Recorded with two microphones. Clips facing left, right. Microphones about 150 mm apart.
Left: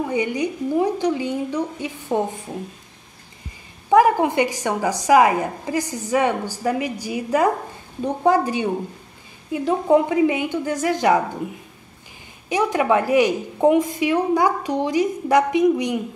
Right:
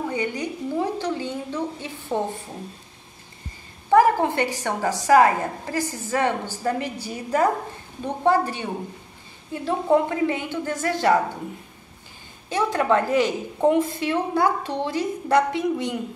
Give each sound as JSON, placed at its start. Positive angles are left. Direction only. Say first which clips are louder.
{"t": 0.1, "sound": "a woman's voice", "louder": "left 5 dB", "side_deg": 15}
{"t": 3.9, "sound": "a woman's voice", "louder": "left 2 dB", "side_deg": 15}
{"t": 12.4, "sound": "a woman's voice", "louder": "left 2 dB", "side_deg": 15}